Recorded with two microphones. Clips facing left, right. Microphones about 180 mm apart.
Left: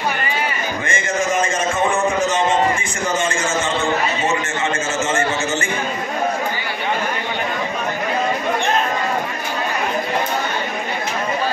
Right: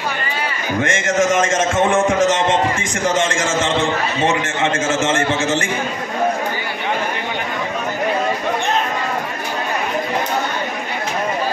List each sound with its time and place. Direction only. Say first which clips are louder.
0.8 s a man's voice: right 4 dB; 90° right
4.8 s a man's voice: right 3 dB; 90° right